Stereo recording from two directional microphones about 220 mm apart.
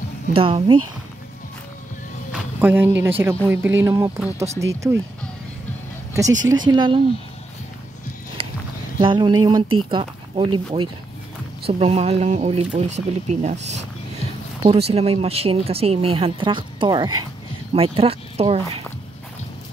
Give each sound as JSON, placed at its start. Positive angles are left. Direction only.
{"t": 0.3, "sound": "speech", "side_deg": -25}
{"t": 2.6, "sound": "speech", "side_deg": -10}
{"t": 6.6, "sound": "speech", "side_deg": -20}
{"t": 8.4, "sound": "a sound", "side_deg": -25}
{"t": 9.0, "sound": "speech", "side_deg": -20}